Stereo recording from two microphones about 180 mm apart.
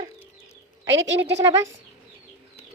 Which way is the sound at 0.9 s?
90° right.